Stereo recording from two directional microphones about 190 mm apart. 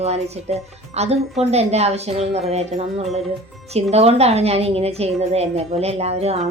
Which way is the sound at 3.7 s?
35° right (ahead or behind).